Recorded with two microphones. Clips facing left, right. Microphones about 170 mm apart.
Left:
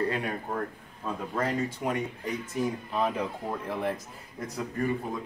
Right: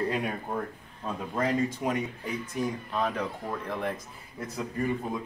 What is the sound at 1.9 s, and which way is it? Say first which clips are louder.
Speech: even; centre (ahead or behind).